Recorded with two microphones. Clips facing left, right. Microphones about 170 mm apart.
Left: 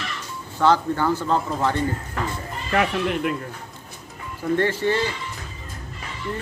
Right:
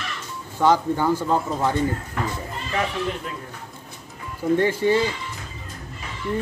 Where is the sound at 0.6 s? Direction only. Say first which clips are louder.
Even; 15° right (ahead or behind).